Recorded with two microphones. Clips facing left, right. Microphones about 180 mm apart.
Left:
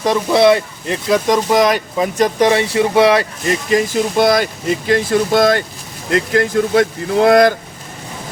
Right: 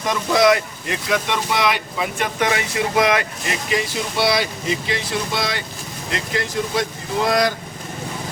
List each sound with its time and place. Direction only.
0.0 s speech: 30° left (ahead or behind); by 7.5 s 55° left (ahead or behind)